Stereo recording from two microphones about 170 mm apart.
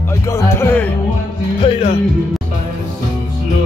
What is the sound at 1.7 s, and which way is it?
Speech, 35° left (ahead or behind).